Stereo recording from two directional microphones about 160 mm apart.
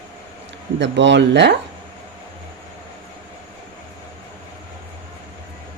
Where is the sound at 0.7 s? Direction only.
90° right.